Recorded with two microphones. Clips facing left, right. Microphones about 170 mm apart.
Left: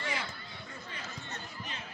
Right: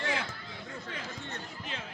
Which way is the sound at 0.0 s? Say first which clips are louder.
Right 4 dB; 90° right.